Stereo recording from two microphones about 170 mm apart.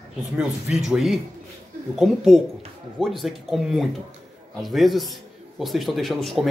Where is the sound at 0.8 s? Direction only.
Centre (ahead or behind).